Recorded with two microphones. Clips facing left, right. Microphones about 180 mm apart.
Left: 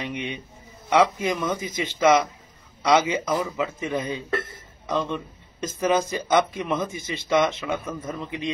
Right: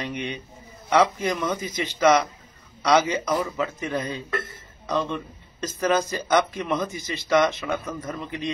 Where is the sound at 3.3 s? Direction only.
10° left (ahead or behind).